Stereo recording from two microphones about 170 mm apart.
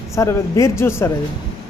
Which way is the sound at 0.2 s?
20° left (ahead or behind).